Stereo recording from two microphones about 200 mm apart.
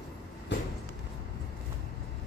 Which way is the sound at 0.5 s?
60° left (ahead or behind).